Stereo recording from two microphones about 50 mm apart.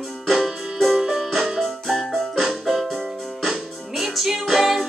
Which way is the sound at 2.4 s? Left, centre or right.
Centre.